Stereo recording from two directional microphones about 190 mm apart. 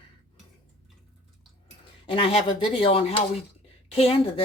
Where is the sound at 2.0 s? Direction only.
25° left (ahead or behind).